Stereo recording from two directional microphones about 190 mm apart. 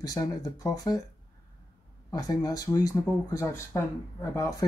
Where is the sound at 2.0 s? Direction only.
20° left (ahead or behind).